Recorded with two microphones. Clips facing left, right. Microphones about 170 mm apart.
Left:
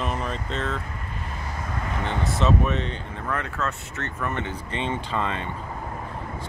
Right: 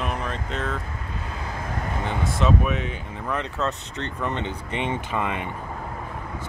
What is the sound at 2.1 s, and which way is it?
Speech, centre (ahead or behind).